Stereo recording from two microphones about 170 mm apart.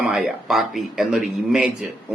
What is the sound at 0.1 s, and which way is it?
A man's voice, 5° right (ahead or behind).